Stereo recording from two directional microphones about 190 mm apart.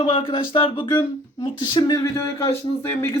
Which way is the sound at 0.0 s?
25° left (ahead or behind).